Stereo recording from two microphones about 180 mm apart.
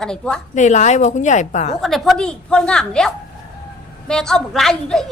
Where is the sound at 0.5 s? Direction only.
40° left (ahead or behind).